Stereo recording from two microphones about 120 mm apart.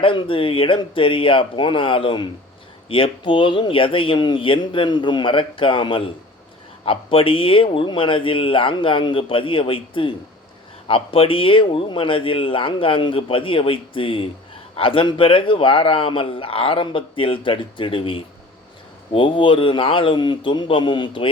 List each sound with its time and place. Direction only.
0.0 s speech: 45° left (ahead or behind)